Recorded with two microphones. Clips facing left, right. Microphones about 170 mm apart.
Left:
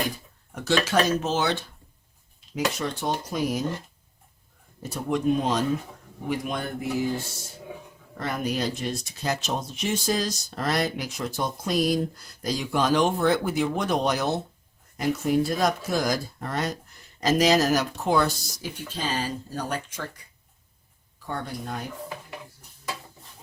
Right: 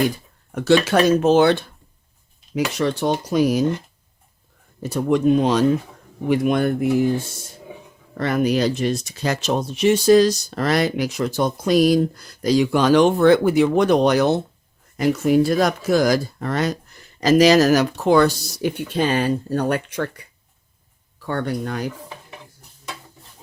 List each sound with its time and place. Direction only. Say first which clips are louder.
0.5 s speech: right 7 dB; 70° right (ahead or behind)
2.7 s speech: right 8 dB; 80° right
4.8 s speech: right 8 dB; 80° right; by 6.8 s 65° right (ahead or behind)
8.2 s speech: right 9 dB; 80° right
14.9 s speech: right 7 dB; 90° right; by 20.2 s 65° right (ahead or behind)
21.2 s speech: right 8 dB; 75° right (ahead or behind)